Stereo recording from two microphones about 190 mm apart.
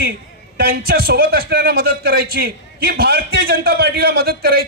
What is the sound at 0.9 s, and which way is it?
A man's voice, 55° right (ahead or behind).